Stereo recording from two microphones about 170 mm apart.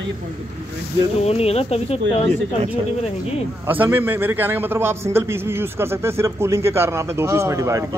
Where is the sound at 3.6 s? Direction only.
10° right (ahead or behind).